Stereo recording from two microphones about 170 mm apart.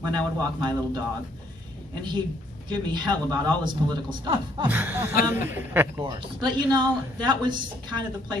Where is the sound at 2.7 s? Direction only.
25° right (ahead or behind).